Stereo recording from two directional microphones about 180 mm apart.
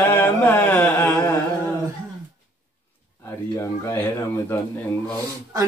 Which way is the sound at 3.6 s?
15° left (ahead or behind).